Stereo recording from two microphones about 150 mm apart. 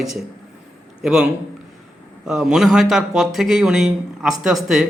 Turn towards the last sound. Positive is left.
turn(degrees=0)  # may be behind; listen again after turning